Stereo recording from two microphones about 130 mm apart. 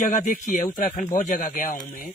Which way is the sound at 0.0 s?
70° left (ahead or behind).